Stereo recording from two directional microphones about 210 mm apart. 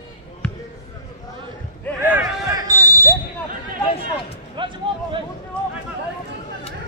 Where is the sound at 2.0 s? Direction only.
15° right (ahead or behind).